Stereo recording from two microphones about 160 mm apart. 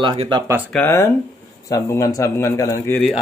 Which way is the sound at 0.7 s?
15° left (ahead or behind).